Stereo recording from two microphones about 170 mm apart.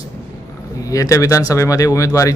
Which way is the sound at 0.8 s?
20° left (ahead or behind).